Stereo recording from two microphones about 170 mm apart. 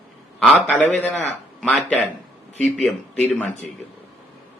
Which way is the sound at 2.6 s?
5° left (ahead or behind).